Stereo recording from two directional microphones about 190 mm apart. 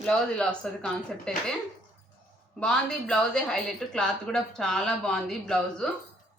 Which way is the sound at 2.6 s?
5° left (ahead or behind).